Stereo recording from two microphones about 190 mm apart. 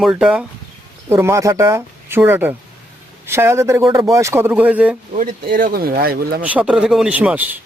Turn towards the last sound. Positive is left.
turn(degrees=-10)  # may be behind; listen again after turning